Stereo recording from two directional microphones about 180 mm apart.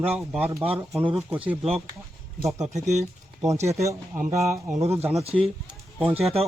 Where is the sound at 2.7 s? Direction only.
40° right (ahead or behind).